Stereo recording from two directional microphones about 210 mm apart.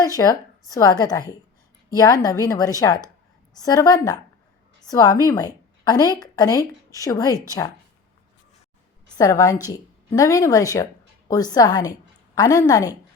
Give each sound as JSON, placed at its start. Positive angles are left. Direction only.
{"t": 0.2, "sound": "a woman's voice", "side_deg": 10}
{"t": 9.1, "sound": "a woman's voice", "side_deg": 15}